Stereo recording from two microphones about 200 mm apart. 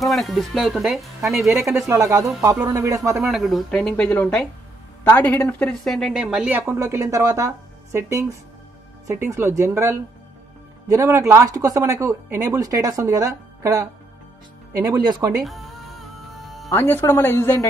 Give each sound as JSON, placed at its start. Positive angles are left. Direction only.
{"t": 0.0, "sound": "speech", "side_deg": 0}
{"t": 3.3, "sound": "speech", "side_deg": 0}
{"t": 15.4, "sound": "music", "side_deg": 0}
{"t": 16.7, "sound": "speech", "side_deg": 10}